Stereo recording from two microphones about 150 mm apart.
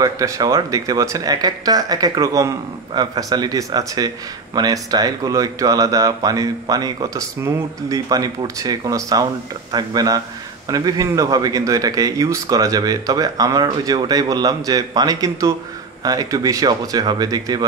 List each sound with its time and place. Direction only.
0.0 s speech: 25° right (ahead or behind)